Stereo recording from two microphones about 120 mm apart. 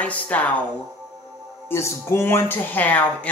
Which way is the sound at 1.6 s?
20° left (ahead or behind).